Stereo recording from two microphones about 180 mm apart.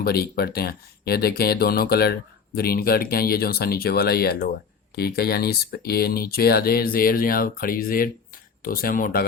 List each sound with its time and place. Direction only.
0.0 s speech: 60° left (ahead or behind)